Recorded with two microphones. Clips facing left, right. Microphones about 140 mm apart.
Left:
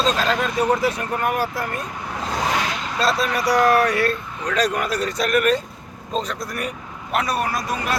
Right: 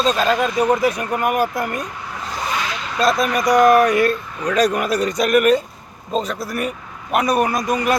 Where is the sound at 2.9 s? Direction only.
15° right (ahead or behind).